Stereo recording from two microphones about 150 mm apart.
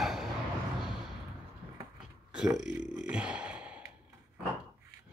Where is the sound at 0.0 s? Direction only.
Centre (ahead or behind).